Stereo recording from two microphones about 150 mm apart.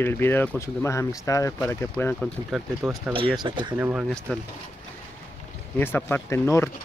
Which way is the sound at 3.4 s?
30° right (ahead or behind).